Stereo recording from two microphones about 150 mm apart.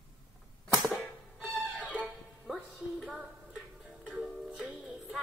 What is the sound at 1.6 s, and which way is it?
Music, 10° right (ahead or behind).